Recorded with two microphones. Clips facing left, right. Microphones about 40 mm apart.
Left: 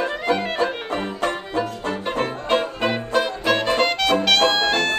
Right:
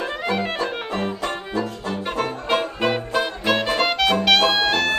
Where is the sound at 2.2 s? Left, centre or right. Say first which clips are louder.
Left 2 dB; centre.